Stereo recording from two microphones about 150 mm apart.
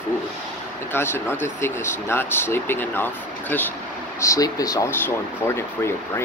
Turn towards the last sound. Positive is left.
turn(degrees=15)  # may be behind; listen again after turning